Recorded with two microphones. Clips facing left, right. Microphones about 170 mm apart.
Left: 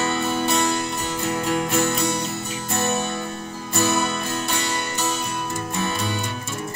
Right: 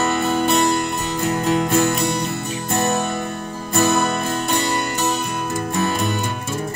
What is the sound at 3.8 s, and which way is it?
Music, 50° right (ahead or behind).